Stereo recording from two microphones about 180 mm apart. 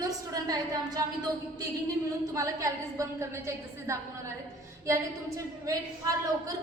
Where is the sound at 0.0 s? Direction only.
20° right (ahead or behind).